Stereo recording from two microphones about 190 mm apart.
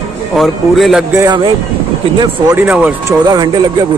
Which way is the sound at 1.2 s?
25° right (ahead or behind).